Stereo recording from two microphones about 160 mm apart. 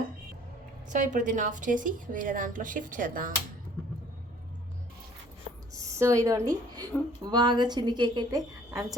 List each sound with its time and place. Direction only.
0.9 s a woman's voice: 50° right (ahead or behind)
5.7 s a woman's voice: 20° right (ahead or behind)